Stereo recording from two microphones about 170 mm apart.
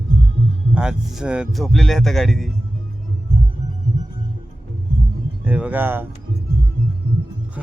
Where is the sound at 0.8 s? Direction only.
5° right (ahead or behind).